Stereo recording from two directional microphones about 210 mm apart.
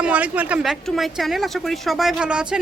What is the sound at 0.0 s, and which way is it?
Speech, 5° right (ahead or behind).